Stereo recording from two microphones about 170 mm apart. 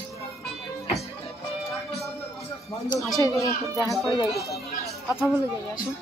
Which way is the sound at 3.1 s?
20° left (ahead or behind).